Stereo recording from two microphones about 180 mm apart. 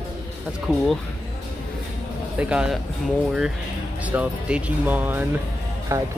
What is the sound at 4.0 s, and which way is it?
Speech, 10° right (ahead or behind).